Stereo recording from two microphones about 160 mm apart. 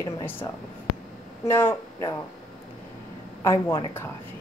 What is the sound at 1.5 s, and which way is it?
Speech, 15° left (ahead or behind).